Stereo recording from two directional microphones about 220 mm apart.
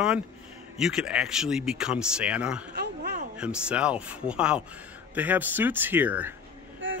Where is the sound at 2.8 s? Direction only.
45° right (ahead or behind).